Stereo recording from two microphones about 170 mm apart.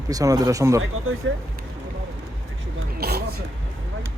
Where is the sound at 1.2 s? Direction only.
90° right.